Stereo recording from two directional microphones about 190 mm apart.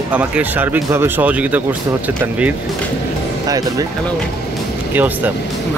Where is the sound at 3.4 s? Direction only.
20° right (ahead or behind).